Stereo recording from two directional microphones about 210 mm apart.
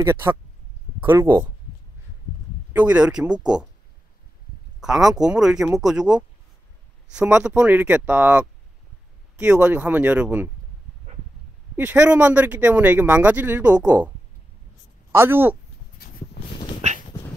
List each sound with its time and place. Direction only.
0.0 s speech: 10° right (ahead or behind)
2.7 s speech: 5° right (ahead or behind)
4.7 s speech: centre (ahead or behind)
11.1 s a sound: 30° right (ahead or behind)
11.7 s speech: 10° right (ahead or behind)
15.1 s speech: 10° right (ahead or behind)
16.0 s a sound: 45° left (ahead or behind)
16.4 s dog: 50° left (ahead or behind)